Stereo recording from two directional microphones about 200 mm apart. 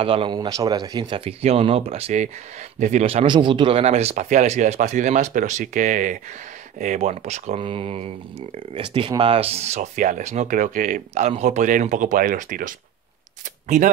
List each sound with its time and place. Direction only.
0.0 s speech: 25° right (ahead or behind); by 12.7 s 45° right (ahead or behind)